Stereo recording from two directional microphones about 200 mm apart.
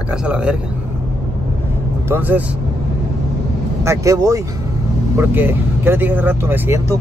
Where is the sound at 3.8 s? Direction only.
15° right (ahead or behind).